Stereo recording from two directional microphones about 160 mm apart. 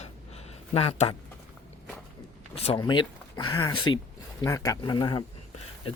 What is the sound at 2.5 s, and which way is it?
Speech, 40° left (ahead or behind).